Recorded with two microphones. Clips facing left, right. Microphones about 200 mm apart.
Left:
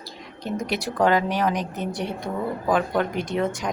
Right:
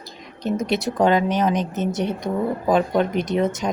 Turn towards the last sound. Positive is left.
turn(degrees=-20)  # may be behind; listen again after turning